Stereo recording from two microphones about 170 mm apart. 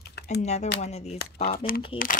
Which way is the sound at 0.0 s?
75° left (ahead or behind).